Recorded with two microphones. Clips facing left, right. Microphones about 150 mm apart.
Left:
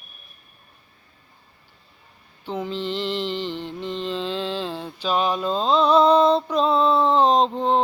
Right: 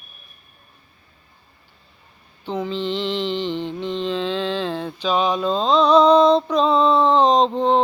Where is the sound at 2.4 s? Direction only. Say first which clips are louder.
Right 3 dB; 10° left (ahead or behind).